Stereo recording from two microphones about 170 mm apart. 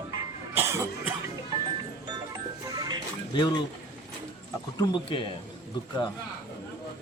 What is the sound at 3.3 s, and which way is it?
Speech, 25° left (ahead or behind).